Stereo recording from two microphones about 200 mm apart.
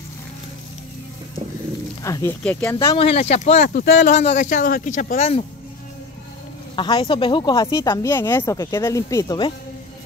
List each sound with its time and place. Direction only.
2.0 s speech: 15° left (ahead or behind)
3.0 s speech: 30° left (ahead or behind)
6.7 s speech: 25° left (ahead or behind)